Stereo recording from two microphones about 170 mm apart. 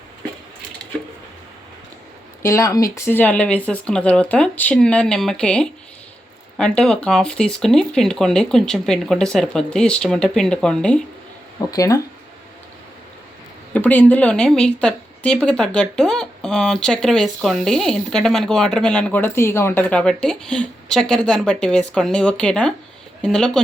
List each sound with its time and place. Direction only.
2.4 s a woman's voice: 20° left (ahead or behind)
11.7 s speech: 20° left (ahead or behind)
13.7 s a woman's voice: 10° left (ahead or behind)